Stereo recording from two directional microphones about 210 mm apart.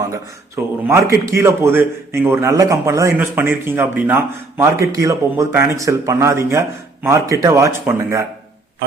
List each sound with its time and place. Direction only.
0.0 s a man's voice: 15° right (ahead or behind)